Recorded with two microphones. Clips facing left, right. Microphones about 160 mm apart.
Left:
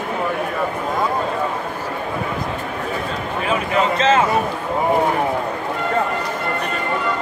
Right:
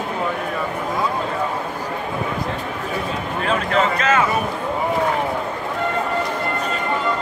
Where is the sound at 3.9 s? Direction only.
25° left (ahead or behind).